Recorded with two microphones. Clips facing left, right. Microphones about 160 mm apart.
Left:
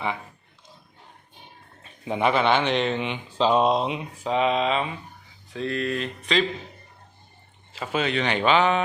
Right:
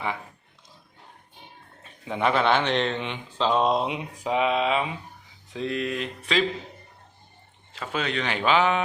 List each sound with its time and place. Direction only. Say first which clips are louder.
1.8 s a sound: left 3 dB; 20° left (ahead or behind)
2.2 s speech: left 1 dB; centre (ahead or behind)
3.8 s speech: left 1 dB; 10° right (ahead or behind)
7.7 s speech: left 3 dB; 5° left (ahead or behind)